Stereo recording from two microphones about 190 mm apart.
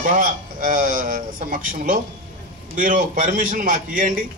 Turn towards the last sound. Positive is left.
turn(degrees=-45)  # may be behind; listen again after turning